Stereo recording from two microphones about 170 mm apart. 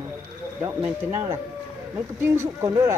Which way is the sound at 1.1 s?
15° right (ahead or behind).